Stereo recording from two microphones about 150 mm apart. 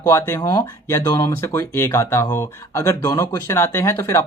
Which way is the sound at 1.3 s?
15° left (ahead or behind).